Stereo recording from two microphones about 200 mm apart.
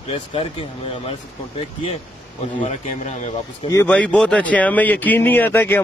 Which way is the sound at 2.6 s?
35° left (ahead or behind).